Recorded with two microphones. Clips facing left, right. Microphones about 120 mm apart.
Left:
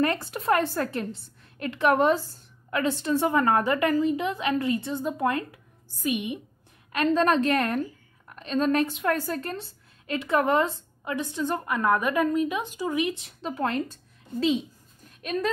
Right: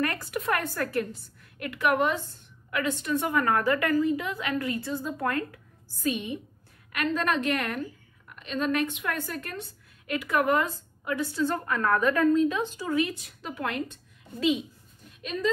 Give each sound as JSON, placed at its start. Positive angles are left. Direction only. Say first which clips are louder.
{"t": 0.0, "sound": "a woman's voice", "louder": "left 3 dB", "side_deg": 25}
{"t": 6.9, "sound": "a woman's voice", "louder": "left 5 dB", "side_deg": 30}